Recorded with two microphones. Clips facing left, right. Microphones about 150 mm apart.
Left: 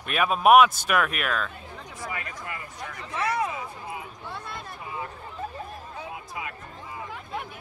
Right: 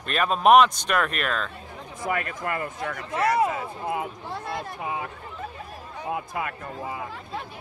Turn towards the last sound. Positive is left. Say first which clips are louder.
# right 6 dB
turn(degrees=-65)  # may be behind; listen again after turning